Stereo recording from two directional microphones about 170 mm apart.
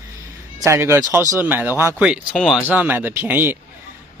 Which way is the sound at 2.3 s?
Centre (ahead or behind).